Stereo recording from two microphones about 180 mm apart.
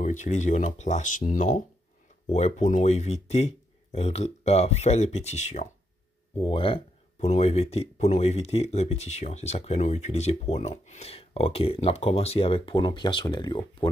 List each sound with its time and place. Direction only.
0.0 s speech: 40° left (ahead or behind); by 13.8 s 25° left (ahead or behind)